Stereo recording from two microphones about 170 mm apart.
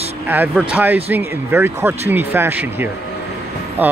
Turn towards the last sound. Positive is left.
turn(degrees=-10)  # may be behind; listen again after turning